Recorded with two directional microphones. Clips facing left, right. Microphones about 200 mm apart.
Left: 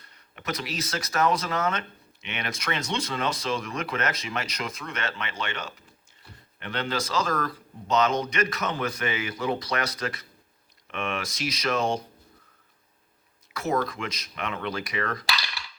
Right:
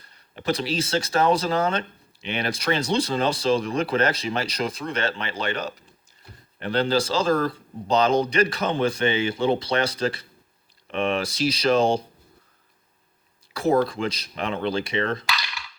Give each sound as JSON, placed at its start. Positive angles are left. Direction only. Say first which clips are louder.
{"t": 0.3, "sound": "a man's voice", "louder": "right 7 dB", "side_deg": -30}
{"t": 13.5, "sound": "speech", "louder": "right 6 dB", "side_deg": -30}